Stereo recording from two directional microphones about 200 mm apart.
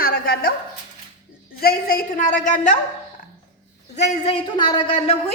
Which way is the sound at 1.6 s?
45° left (ahead or behind).